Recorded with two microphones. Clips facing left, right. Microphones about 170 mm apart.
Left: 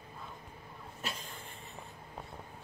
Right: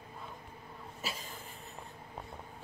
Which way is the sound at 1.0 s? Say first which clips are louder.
Even; centre (ahead or behind).